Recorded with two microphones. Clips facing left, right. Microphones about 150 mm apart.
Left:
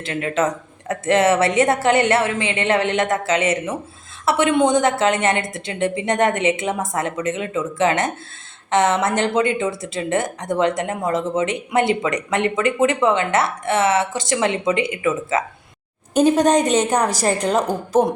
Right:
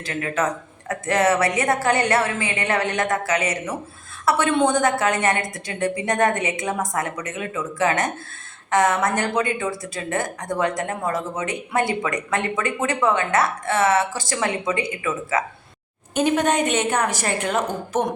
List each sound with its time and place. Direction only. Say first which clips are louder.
0.0 s speech: left 3 dB; 25° left (ahead or behind)
16.1 s a woman's voice: left 5 dB; 35° left (ahead or behind)